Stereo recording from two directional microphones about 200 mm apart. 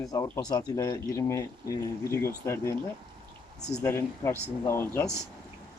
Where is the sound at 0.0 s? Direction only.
15° left (ahead or behind).